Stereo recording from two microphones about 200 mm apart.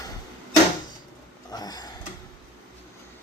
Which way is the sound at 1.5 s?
20° left (ahead or behind).